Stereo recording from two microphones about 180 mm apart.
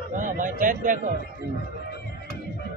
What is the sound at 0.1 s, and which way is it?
A man's voice, 45° right (ahead or behind).